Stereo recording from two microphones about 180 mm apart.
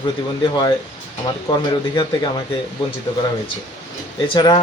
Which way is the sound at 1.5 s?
20° left (ahead or behind).